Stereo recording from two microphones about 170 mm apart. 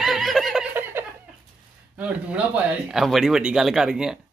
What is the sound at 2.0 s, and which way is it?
A man's voice, 5° right (ahead or behind).